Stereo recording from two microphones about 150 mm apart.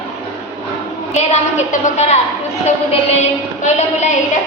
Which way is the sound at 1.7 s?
50° left (ahead or behind).